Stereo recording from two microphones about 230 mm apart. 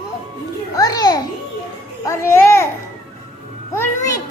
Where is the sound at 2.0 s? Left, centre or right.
Centre.